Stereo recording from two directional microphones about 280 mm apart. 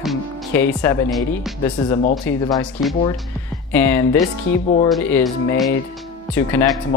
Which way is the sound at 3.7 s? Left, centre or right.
Centre.